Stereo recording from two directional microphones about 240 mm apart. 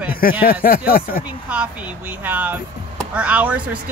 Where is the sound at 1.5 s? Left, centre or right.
Centre.